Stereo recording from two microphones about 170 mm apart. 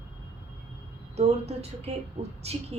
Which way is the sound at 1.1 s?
40° right (ahead or behind).